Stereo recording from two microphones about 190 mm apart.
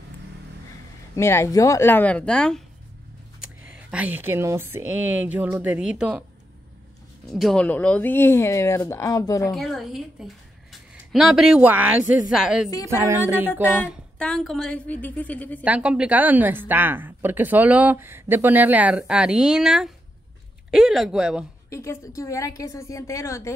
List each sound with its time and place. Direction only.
1.1 s speech: 15° left (ahead or behind)
3.7 s a woman's voice: 5° right (ahead or behind)
7.3 s speech: 5° left (ahead or behind)
9.5 s a woman's voice: centre (ahead or behind)
12.8 s a woman's voice: 15° right (ahead or behind)
13.5 s speech: 10° left (ahead or behind)
15.6 s a woman's voice: 5° right (ahead or behind)
21.6 s speech: 15° left (ahead or behind)